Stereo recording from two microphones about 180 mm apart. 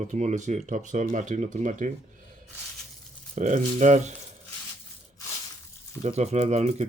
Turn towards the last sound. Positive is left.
turn(degrees=-40)  # may be behind; listen again after turning